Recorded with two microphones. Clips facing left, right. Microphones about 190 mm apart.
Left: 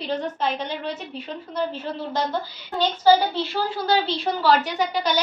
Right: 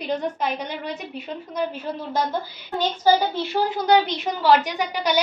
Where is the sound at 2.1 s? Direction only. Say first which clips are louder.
Right 2 dB; 15° right (ahead or behind).